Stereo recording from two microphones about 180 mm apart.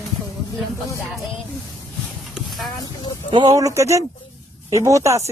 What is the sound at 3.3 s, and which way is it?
Speech, 20° right (ahead or behind).